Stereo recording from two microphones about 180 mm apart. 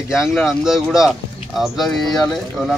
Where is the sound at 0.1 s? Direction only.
5° right (ahead or behind).